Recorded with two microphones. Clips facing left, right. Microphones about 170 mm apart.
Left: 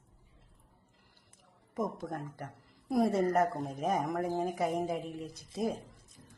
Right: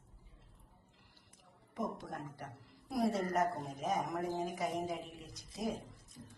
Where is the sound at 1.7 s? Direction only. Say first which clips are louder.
Left 5 dB; 45° left (ahead or behind).